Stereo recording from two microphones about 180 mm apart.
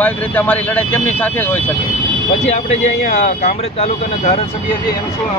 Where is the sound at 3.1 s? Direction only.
40° left (ahead or behind).